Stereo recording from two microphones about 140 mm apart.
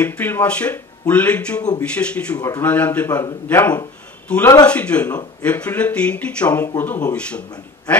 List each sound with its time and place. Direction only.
0.0 s speech: 10° left (ahead or behind)
2.3 s a man's voice: 25° left (ahead or behind)
2.6 s speech: 10° left (ahead or behind)